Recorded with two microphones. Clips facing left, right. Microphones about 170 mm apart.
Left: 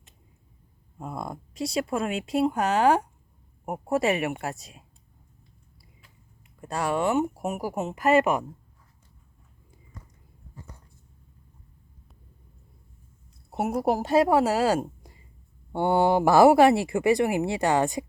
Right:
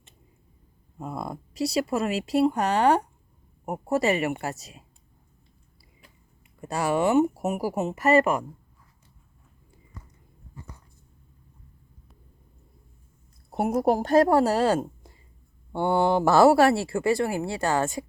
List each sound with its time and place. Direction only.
0.9 s speech: centre (ahead or behind)
6.6 s speech: 5° right (ahead or behind)
13.5 s speech: centre (ahead or behind); by 18.0 s 20° left (ahead or behind)